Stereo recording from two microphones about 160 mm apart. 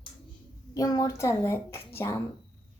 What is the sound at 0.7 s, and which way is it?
A child's voice, 25° left (ahead or behind).